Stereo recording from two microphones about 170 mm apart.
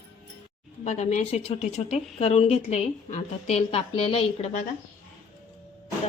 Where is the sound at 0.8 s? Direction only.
45° left (ahead or behind).